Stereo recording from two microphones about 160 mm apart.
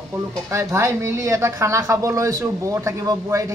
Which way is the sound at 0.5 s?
20° right (ahead or behind).